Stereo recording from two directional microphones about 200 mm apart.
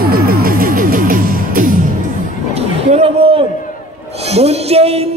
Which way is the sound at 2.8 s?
30° right (ahead or behind).